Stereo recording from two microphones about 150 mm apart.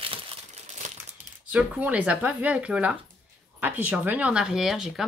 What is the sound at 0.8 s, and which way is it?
Crumpling, 50° right (ahead or behind).